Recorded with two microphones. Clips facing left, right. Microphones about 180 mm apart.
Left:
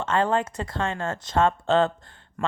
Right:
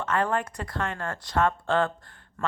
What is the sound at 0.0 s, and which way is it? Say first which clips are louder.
Speech: left 3 dB; 25° left (ahead or behind).